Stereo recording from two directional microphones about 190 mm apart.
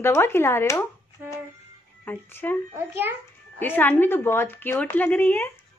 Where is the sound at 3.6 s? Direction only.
10° left (ahead or behind).